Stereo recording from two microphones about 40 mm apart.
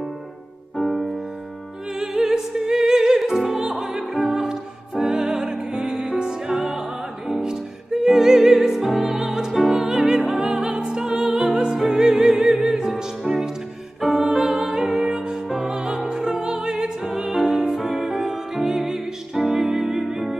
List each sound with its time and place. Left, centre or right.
0.7 s music: centre
2.0 s music: centre
9.5 s music: centre
9.8 s music: centre